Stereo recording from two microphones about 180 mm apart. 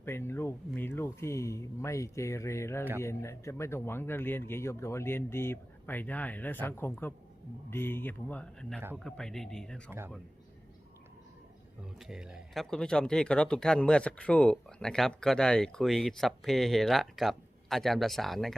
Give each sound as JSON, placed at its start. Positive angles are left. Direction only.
{"t": 0.0, "sound": "speech", "side_deg": 15}
{"t": 11.9, "sound": "speech", "side_deg": -5}